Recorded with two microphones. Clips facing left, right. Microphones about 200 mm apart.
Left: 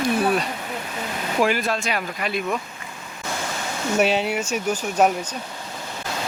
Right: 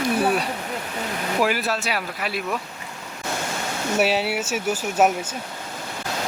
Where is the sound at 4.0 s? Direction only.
5° right (ahead or behind).